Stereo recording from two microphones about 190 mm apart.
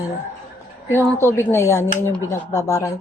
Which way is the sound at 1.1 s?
10° left (ahead or behind).